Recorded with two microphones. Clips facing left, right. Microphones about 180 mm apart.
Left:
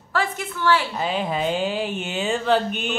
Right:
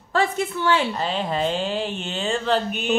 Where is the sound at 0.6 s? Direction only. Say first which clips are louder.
Left 1 dB; 20° right (ahead or behind).